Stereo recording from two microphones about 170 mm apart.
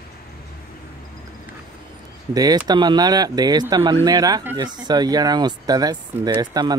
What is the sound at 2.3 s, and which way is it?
Speech, 20° right (ahead or behind).